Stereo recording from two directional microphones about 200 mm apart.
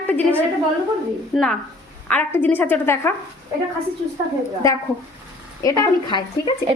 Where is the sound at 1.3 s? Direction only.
5° left (ahead or behind).